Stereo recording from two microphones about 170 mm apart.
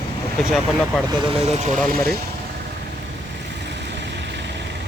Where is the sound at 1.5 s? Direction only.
40° right (ahead or behind).